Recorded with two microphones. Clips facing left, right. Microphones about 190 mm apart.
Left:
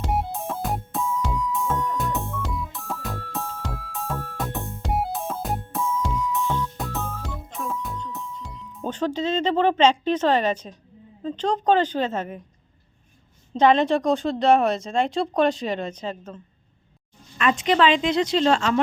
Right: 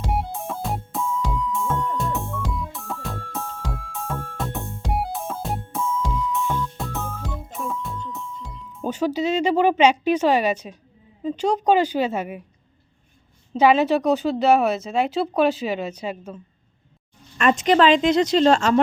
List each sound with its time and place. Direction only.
0.0 s music: centre (ahead or behind)
11.2 s a woman's voice: 10° right (ahead or behind)
13.5 s speech: 5° right (ahead or behind)
17.3 s speech: 45° right (ahead or behind)